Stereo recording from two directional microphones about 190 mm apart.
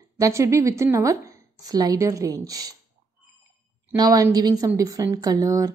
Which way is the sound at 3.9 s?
20° right (ahead or behind).